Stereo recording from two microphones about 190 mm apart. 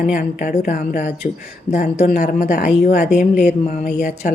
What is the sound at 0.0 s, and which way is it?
A woman's voice, 45° left (ahead or behind).